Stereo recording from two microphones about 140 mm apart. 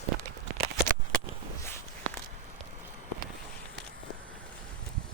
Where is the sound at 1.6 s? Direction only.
15° left (ahead or behind).